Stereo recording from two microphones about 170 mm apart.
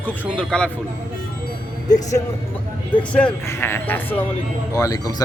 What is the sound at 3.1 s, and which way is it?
A man's voice, 10° left (ahead or behind).